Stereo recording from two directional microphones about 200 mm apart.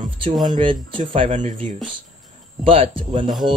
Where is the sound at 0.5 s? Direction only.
25° right (ahead or behind).